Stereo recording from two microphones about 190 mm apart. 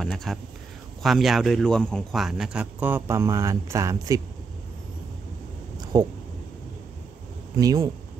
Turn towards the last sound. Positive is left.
turn(degrees=-20)  # may be behind; listen again after turning